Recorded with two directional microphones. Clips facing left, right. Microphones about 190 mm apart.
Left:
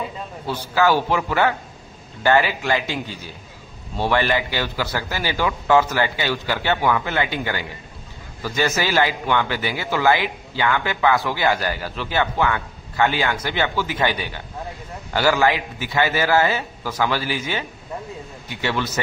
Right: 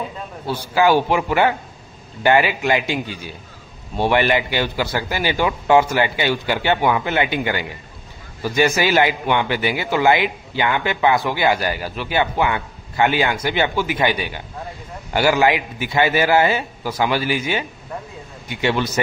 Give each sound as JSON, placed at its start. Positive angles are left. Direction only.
{"t": 0.5, "sound": "a man's voice", "side_deg": -15}